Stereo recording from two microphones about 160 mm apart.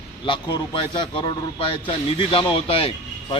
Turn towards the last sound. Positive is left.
turn(degrees=35)  # may be behind; listen again after turning